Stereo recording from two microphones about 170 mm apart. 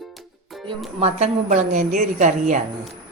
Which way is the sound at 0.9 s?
40° right (ahead or behind).